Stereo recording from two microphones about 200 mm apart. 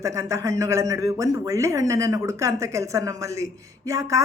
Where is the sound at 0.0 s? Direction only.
15° right (ahead or behind).